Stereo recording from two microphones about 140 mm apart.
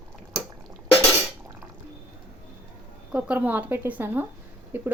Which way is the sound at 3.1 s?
10° right (ahead or behind).